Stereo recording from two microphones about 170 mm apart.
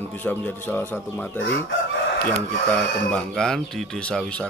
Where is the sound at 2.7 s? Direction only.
5° left (ahead or behind).